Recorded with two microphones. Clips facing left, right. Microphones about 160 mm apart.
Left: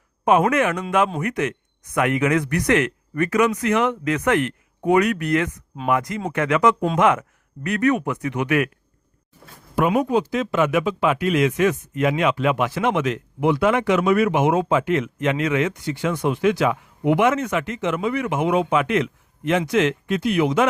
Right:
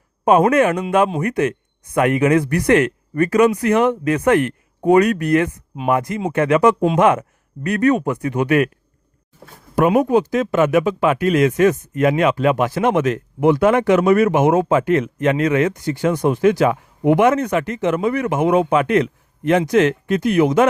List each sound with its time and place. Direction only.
0.3 s a man's voice: 35° right (ahead or behind)
9.7 s speech: 45° right (ahead or behind)